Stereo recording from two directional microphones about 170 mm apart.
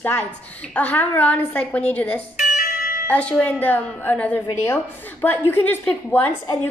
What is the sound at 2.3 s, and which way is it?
Music, 50° left (ahead or behind).